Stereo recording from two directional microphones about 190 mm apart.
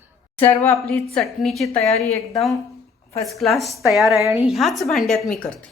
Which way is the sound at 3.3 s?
Centre (ahead or behind).